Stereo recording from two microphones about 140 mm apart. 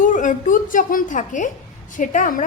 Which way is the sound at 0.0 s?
70° left (ahead or behind).